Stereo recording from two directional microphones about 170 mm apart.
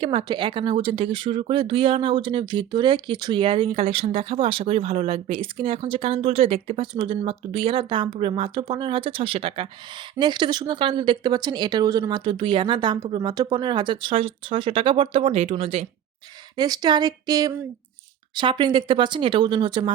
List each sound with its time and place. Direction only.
0.0 s speech: 30° right (ahead or behind)
16.6 s speech: 25° right (ahead or behind)